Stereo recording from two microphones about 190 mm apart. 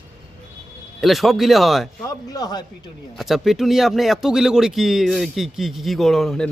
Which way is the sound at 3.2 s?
Centre (ahead or behind).